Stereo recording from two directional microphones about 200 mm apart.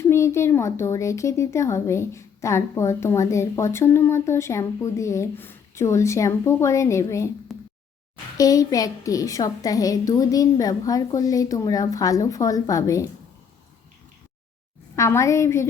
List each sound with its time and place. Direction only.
0.0 s a child's voice: 15° left (ahead or behind)
7.5 s a sound: centre (ahead or behind)
8.4 s a child's voice: 20° left (ahead or behind)
14.9 s a child's voice: 15° left (ahead or behind)